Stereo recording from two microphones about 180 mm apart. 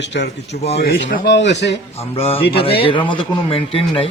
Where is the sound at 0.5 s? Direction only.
60° left (ahead or behind).